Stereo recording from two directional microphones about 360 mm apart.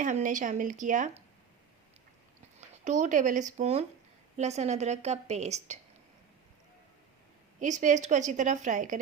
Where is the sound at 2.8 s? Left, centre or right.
Centre.